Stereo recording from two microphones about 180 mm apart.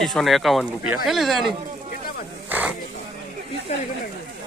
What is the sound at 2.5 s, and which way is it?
Snake, 10° right (ahead or behind).